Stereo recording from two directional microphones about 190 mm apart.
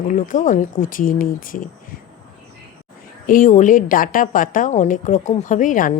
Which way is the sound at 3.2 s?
45° left (ahead or behind).